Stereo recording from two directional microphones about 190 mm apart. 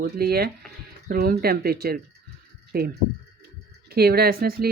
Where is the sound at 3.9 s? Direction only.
55° right (ahead or behind).